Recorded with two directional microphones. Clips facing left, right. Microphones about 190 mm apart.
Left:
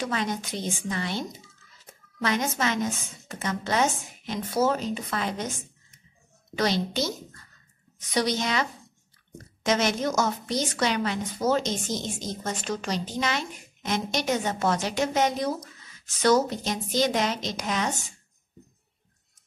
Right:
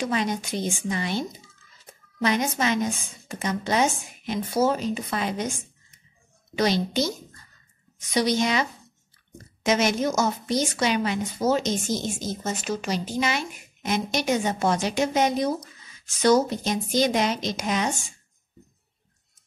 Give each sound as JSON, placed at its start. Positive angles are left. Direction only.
{"t": 0.0, "sound": "a woman's voice", "side_deg": -15}
{"t": 6.5, "sound": "a woman's voice", "side_deg": -15}